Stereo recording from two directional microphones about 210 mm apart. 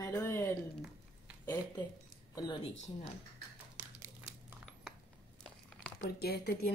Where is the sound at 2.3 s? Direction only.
20° left (ahead or behind).